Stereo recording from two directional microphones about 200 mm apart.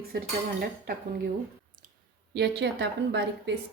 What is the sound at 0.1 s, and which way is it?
Speech, 50° right (ahead or behind).